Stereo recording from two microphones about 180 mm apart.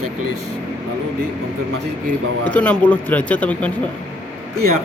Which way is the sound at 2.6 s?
10° left (ahead or behind).